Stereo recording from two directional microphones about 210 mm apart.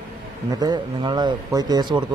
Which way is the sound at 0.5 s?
20° right (ahead or behind).